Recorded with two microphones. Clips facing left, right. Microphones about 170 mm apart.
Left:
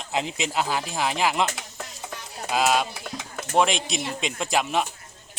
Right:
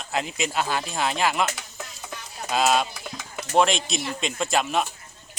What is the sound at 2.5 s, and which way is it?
Speech, 10° left (ahead or behind).